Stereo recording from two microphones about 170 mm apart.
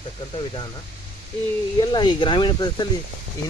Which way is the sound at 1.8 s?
25° left (ahead or behind).